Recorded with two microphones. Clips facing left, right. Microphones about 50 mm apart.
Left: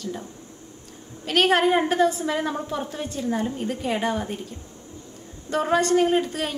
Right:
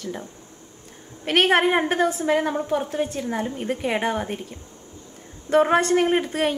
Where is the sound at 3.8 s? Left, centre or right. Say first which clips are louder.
Right 1 dB; right.